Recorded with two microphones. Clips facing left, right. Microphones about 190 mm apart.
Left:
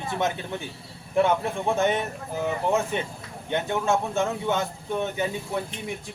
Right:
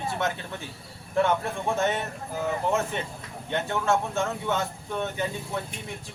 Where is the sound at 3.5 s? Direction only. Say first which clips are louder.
Left 1 dB; 15° left (ahead or behind).